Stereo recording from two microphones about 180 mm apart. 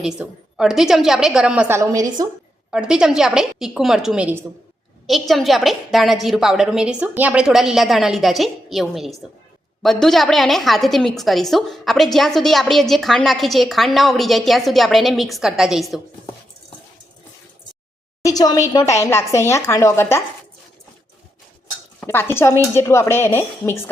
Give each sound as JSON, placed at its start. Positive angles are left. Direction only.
{"t": 0.0, "sound": "a woman's voice", "side_deg": -5}
{"t": 2.6, "sound": "a woman's voice", "side_deg": -5}
{"t": 18.2, "sound": "a woman's voice", "side_deg": 20}
{"t": 22.0, "sound": "speech", "side_deg": 15}